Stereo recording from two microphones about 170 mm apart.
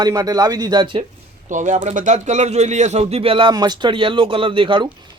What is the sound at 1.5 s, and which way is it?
A man's voice, 45° right (ahead or behind).